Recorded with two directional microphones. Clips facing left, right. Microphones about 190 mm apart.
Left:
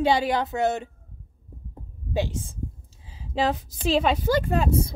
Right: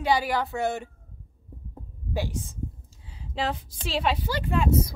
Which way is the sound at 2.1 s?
25° left (ahead or behind).